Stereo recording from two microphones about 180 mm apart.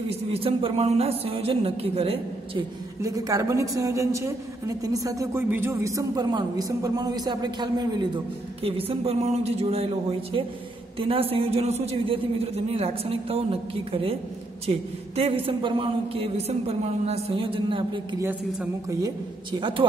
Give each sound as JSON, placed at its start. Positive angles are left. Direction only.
{"t": 0.1, "sound": "speech", "side_deg": -35}
{"t": 3.0, "sound": "a woman's voice", "side_deg": -20}
{"t": 18.2, "sound": "a woman's voice", "side_deg": -15}